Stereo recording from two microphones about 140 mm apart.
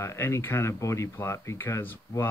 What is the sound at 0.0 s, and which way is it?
Speech, 20° left (ahead or behind).